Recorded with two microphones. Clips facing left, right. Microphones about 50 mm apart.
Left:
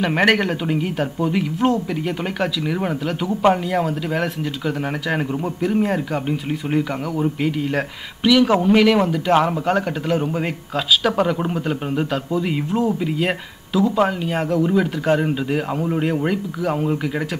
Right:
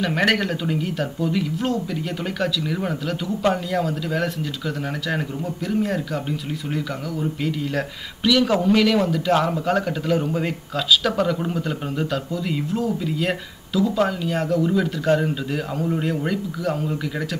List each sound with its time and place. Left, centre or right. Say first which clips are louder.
0.0 s speech: left 3 dB; left
5.7 s speech: left 2 dB; left